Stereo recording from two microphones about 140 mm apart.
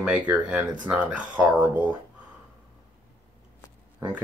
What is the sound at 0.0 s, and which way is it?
Speech, 10° right (ahead or behind).